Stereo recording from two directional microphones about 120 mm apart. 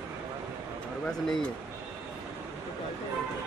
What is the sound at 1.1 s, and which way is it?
Speech, 5° left (ahead or behind).